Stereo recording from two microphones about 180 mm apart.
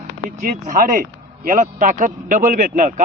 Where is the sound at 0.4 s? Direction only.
50° right (ahead or behind).